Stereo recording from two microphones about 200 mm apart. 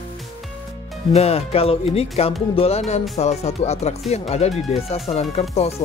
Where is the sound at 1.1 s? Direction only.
30° left (ahead or behind).